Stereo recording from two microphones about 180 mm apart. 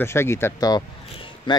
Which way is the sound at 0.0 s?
15° left (ahead or behind).